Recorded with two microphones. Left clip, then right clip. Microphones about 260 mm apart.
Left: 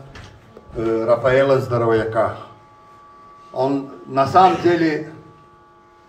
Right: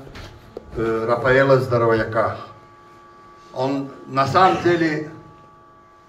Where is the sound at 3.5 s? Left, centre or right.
Left.